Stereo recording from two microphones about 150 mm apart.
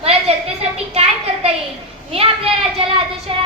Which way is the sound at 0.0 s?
40° right (ahead or behind).